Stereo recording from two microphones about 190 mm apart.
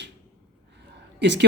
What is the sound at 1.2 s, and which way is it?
Speech, 65° right (ahead or behind).